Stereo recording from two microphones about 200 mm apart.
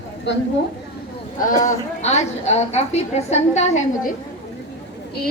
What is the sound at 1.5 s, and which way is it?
A woman's voice, 35° left (ahead or behind).